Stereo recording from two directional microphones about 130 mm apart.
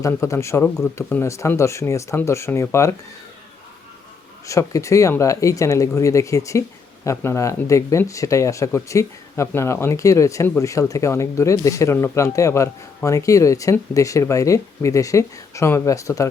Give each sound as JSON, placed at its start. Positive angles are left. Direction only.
{"t": 0.0, "sound": "speech", "side_deg": 25}
{"t": 4.4, "sound": "speech", "side_deg": 25}